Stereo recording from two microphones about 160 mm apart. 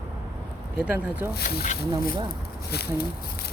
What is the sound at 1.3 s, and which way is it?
Speech, 75° left (ahead or behind).